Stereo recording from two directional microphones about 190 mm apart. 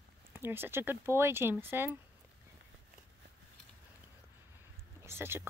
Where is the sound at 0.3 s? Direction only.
10° right (ahead or behind).